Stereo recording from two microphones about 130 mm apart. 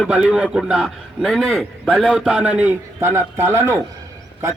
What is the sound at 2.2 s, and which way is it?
A man's voice, 10° right (ahead or behind).